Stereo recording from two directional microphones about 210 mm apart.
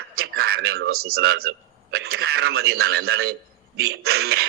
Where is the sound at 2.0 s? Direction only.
50° right (ahead or behind).